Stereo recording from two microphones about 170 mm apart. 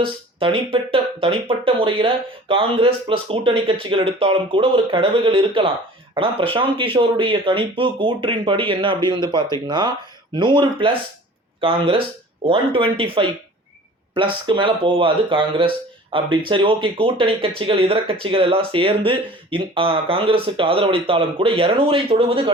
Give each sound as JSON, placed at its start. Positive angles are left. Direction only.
{"t": 0.0, "sound": "speech", "side_deg": -30}